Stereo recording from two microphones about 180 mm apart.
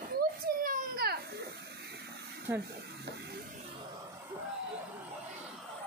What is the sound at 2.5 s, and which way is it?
Speech, 10° right (ahead or behind).